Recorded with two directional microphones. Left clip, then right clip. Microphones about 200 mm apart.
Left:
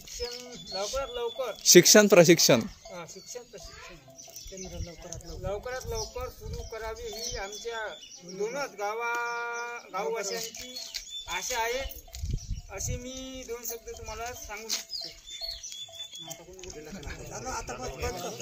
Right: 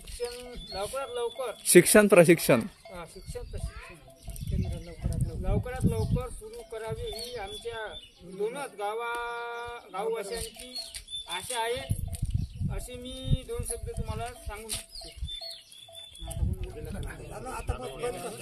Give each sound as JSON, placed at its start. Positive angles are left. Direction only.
{"t": 0.2, "sound": "speech", "side_deg": -5}
{"t": 5.1, "sound": "speech", "side_deg": 0}
{"t": 11.2, "sound": "speech", "side_deg": 5}
{"t": 16.9, "sound": "speech", "side_deg": -5}